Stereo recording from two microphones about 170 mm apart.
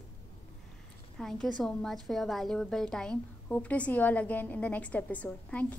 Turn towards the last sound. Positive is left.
turn(degrees=10)  # may be behind; listen again after turning